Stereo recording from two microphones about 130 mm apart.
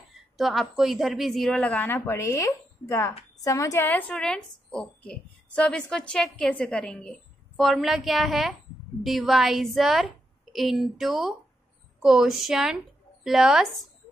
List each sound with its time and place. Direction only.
0.4 s a woman's voice: centre (ahead or behind)
1.6 s a woman's voice: 15° left (ahead or behind); by 13.7 s 5° right (ahead or behind)